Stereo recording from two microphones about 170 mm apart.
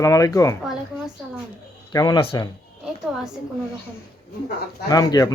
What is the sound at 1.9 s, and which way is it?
Speech, 20° left (ahead or behind).